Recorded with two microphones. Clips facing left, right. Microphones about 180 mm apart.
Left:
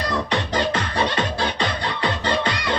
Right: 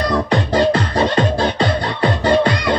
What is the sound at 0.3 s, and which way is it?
Music, 35° right (ahead or behind).